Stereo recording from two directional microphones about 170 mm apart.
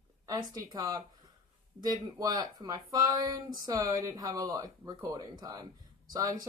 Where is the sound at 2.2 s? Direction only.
20° right (ahead or behind).